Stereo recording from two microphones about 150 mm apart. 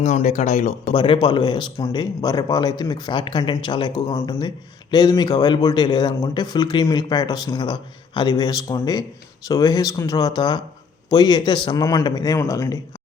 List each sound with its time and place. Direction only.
0.0 s speech: 50° left (ahead or behind)
0.9 s speech: 35° left (ahead or behind)